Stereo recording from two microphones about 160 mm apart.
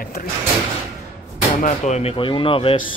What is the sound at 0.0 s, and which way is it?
Sliding door, 60° left (ahead or behind).